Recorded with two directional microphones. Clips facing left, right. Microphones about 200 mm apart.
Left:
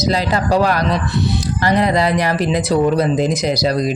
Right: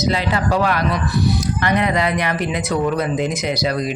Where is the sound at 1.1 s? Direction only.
25° left (ahead or behind).